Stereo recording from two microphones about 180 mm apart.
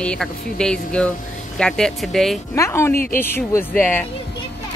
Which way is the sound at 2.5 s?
15° left (ahead or behind).